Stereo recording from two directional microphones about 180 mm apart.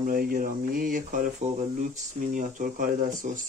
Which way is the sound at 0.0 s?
50° right (ahead or behind).